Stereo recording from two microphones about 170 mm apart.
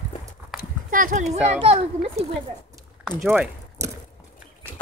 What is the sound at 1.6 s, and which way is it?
Speech, 35° right (ahead or behind).